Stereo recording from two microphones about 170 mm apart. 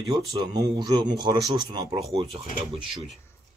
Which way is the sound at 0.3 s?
25° right (ahead or behind).